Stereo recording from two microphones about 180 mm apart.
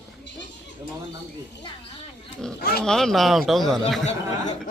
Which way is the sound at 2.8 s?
Centre (ahead or behind).